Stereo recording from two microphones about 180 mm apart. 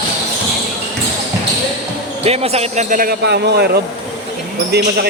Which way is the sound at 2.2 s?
35° right (ahead or behind).